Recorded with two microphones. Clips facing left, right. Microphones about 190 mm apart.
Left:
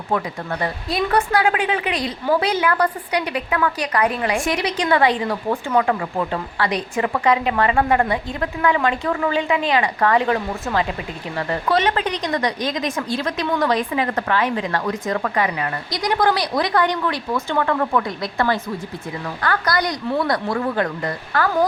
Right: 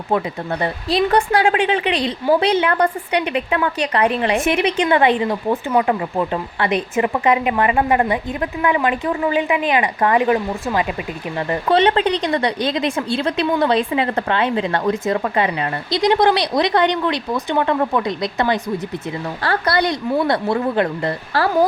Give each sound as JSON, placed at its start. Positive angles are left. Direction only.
{"t": 0.1, "sound": "a woman's voice", "side_deg": -25}
{"t": 11.7, "sound": "a woman's voice", "side_deg": -30}